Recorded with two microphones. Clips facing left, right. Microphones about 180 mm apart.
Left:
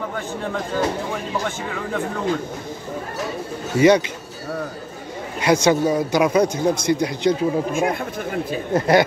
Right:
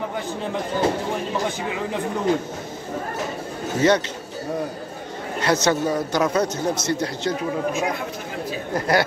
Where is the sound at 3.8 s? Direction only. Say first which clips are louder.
Left 5 dB; 10° left (ahead or behind).